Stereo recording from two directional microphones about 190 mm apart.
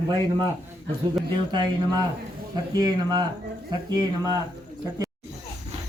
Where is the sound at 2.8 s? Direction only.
20° right (ahead or behind).